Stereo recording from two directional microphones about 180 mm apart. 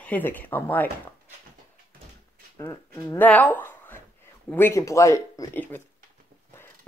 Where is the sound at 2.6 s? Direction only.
15° left (ahead or behind).